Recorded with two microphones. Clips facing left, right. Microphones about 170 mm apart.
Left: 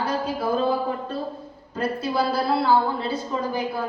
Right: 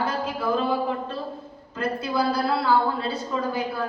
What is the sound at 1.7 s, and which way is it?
A woman's voice, 30° left (ahead or behind).